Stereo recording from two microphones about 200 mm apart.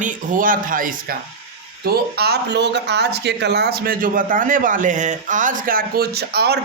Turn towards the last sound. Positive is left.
turn(degrees=-55)  # may be behind; listen again after turning